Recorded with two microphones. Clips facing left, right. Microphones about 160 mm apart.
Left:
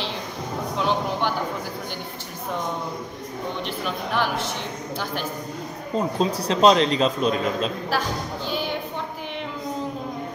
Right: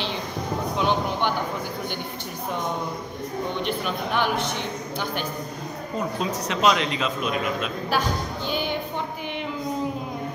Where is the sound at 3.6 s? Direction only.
Centre (ahead or behind).